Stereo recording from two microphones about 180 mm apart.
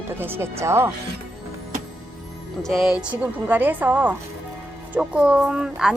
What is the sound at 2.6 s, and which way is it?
A woman's voice, centre (ahead or behind).